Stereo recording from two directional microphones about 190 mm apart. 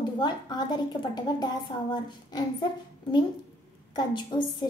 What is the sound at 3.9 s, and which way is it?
Speech, 25° left (ahead or behind).